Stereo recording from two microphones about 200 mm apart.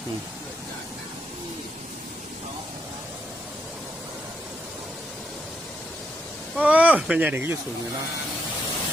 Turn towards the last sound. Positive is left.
turn(degrees=-10)  # may be behind; listen again after turning